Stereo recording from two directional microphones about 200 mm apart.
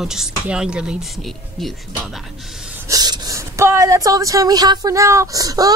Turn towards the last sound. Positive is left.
turn(degrees=-20)  # may be behind; listen again after turning